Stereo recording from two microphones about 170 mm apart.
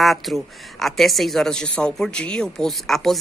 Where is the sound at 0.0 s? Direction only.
Centre (ahead or behind).